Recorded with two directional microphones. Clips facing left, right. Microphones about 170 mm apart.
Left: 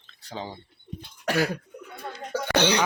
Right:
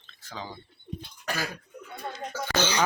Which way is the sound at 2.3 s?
60° left (ahead or behind).